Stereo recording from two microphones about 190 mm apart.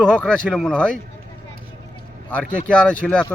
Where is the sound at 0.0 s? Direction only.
5° left (ahead or behind).